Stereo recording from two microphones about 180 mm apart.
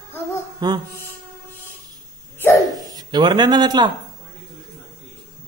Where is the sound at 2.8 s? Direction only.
20° right (ahead or behind).